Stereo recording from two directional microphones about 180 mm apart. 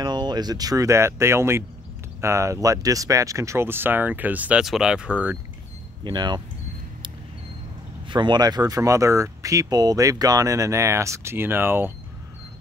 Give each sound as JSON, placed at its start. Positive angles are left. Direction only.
{"t": 0.0, "sound": "speech", "side_deg": -25}
{"t": 6.0, "sound": "speech", "side_deg": -25}
{"t": 8.1, "sound": "speech", "side_deg": -25}